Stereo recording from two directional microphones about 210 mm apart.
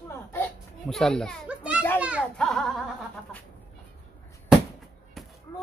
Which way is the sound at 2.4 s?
Centre (ahead or behind).